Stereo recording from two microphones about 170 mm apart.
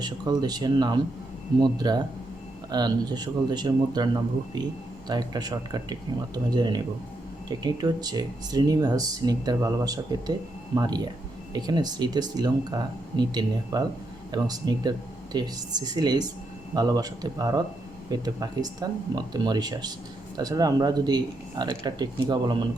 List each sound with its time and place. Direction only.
0.0 s speech: 25° right (ahead or behind)